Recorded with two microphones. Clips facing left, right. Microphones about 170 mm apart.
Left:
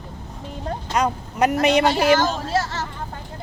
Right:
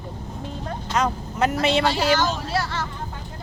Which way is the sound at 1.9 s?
50° left (ahead or behind).